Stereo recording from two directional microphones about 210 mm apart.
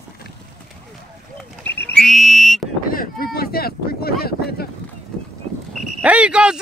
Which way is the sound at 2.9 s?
45° left (ahead or behind).